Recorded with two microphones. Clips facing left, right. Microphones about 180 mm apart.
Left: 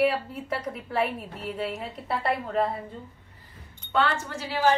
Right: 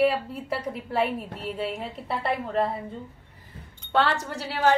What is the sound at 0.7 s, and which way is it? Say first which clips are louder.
Speech: right 2 dB; centre (ahead or behind).